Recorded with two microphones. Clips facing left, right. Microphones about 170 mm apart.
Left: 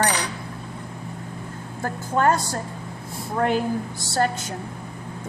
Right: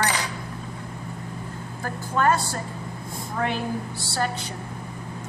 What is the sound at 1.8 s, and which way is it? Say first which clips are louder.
A woman's voice: left 2 dB; 45° left (ahead or behind).